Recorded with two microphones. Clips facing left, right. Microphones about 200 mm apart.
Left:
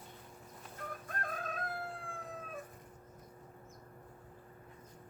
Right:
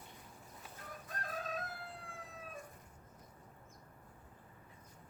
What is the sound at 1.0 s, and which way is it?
Chicken, 55° left (ahead or behind).